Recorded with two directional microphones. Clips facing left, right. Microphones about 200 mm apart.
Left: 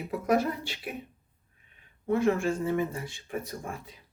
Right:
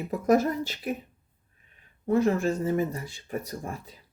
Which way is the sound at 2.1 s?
40° right (ahead or behind).